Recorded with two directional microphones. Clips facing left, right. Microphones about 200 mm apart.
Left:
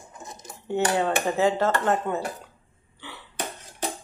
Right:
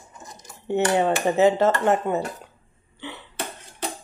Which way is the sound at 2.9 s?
20° right (ahead or behind).